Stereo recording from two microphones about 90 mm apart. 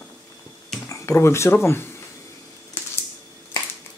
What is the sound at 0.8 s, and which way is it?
Speech, 30° left (ahead or behind).